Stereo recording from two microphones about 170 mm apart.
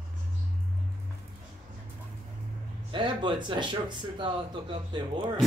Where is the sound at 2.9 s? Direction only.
25° right (ahead or behind).